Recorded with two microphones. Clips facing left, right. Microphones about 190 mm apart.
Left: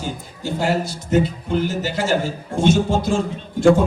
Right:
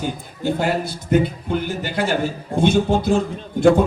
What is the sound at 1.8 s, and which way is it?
A man's voice, 60° right (ahead or behind).